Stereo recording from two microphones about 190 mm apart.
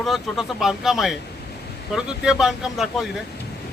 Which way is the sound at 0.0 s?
Centre (ahead or behind).